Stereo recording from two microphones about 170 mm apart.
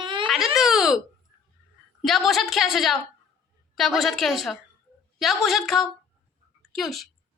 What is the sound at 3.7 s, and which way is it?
A woman's voice, centre (ahead or behind).